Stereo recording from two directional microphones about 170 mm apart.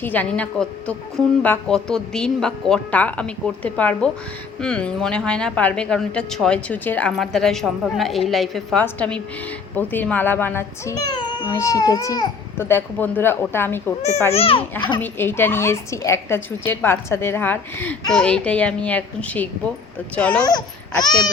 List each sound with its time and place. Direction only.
0.0 s a woman's voice: 10° left (ahead or behind)
14.3 s a child's voice: 35° left (ahead or behind)
14.9 s a woman's voice: 10° left (ahead or behind)
20.4 s speech: 25° left (ahead or behind)